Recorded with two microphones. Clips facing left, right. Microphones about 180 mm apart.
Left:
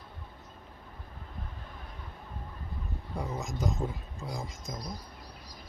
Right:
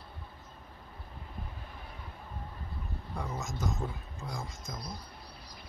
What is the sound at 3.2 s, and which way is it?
Speech, 15° left (ahead or behind).